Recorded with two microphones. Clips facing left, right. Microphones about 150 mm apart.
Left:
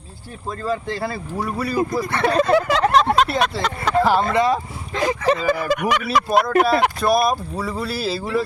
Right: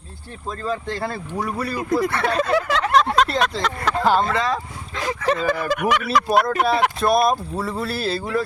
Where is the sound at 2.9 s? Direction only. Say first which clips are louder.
Right 2 dB; centre (ahead or behind).